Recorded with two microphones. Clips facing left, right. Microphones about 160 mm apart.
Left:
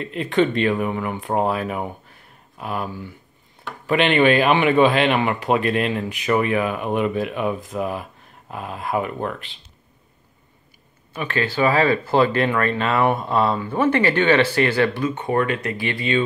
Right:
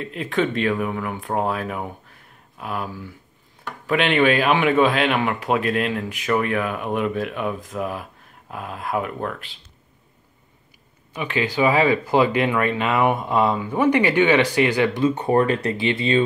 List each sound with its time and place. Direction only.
0.0 s speech: centre (ahead or behind)
11.1 s speech: 15° right (ahead or behind)
15.0 s speech: 35° right (ahead or behind)